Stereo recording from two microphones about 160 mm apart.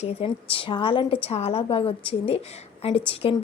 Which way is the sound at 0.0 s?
40° left (ahead or behind).